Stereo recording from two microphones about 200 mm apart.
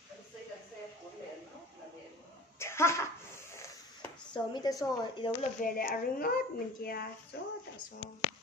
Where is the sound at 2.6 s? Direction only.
15° left (ahead or behind).